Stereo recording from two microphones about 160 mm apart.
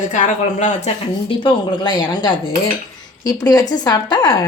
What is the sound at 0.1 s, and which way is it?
Speech, 50° left (ahead or behind).